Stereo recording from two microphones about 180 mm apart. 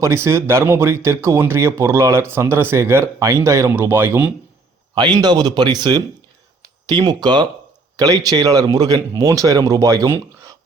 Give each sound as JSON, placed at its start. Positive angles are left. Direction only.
{"t": 0.0, "sound": "speech", "side_deg": -15}
{"t": 4.9, "sound": "speech", "side_deg": -25}